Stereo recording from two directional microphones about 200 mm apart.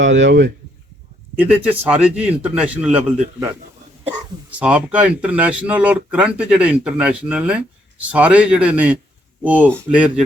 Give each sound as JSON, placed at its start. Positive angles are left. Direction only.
{"t": 0.0, "sound": "speech", "side_deg": -65}
{"t": 1.4, "sound": "a man's voice", "side_deg": -10}
{"t": 4.6, "sound": "a man's voice", "side_deg": -5}